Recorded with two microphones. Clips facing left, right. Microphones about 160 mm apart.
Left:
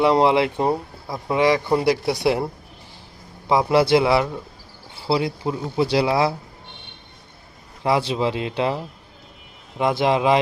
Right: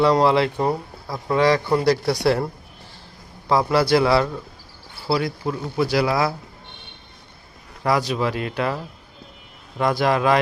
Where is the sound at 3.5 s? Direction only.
20° left (ahead or behind).